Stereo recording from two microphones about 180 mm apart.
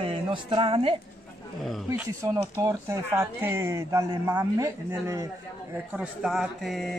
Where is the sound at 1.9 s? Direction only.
15° right (ahead or behind).